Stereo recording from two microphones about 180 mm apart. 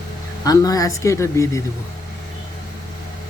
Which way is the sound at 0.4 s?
20° left (ahead or behind).